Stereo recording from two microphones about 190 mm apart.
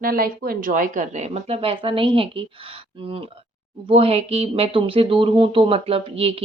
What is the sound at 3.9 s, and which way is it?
Speech, 30° right (ahead or behind).